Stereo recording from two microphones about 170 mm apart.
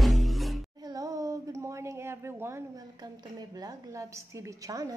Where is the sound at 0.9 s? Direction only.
20° right (ahead or behind).